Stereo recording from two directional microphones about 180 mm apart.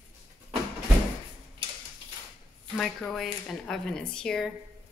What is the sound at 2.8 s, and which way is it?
Speech, 5° left (ahead or behind).